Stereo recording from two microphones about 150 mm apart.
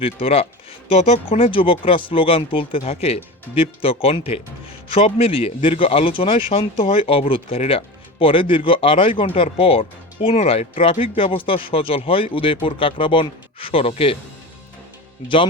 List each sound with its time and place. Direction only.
0.0 s speech: 40° left (ahead or behind)